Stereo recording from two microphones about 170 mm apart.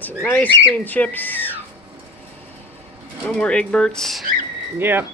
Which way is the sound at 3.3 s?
5° left (ahead or behind).